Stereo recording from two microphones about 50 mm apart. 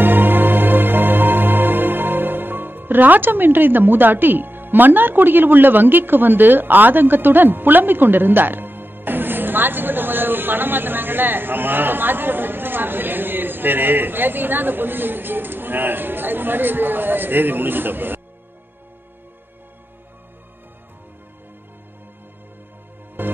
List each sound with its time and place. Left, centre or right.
0.0 s music: right
23.2 s music: right